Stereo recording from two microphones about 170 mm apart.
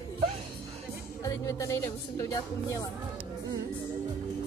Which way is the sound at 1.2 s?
20° left (ahead or behind).